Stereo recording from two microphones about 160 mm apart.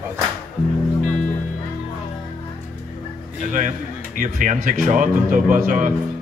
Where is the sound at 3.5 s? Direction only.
55° right (ahead or behind).